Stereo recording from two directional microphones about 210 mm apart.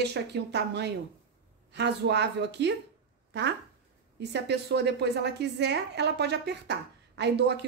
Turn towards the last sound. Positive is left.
turn(degrees=-55)  # may be behind; listen again after turning